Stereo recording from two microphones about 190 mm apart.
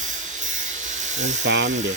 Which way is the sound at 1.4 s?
70° right (ahead or behind).